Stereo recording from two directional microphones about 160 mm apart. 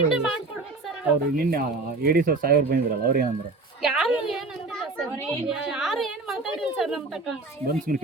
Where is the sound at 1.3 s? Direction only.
70° right (ahead or behind).